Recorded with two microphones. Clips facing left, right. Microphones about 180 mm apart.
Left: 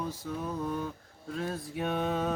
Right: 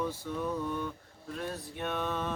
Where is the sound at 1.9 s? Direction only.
45° left (ahead or behind).